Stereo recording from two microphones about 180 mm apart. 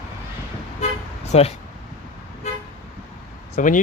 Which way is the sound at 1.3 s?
35° left (ahead or behind).